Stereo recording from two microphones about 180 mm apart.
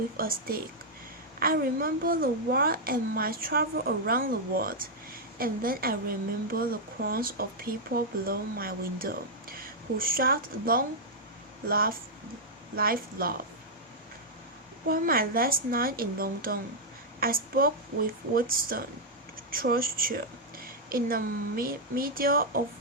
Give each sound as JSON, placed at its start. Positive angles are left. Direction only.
{"t": 0.2, "sound": "a woman's voice", "side_deg": -55}
{"t": 14.8, "sound": "a woman's voice", "side_deg": -55}